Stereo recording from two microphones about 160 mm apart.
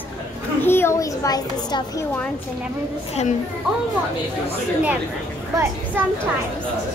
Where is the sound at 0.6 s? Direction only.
15° left (ahead or behind).